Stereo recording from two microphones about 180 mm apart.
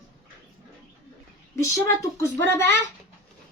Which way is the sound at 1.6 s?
15° left (ahead or behind).